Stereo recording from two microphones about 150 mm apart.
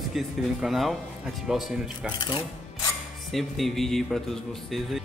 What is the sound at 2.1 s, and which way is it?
Speech, 30° left (ahead or behind).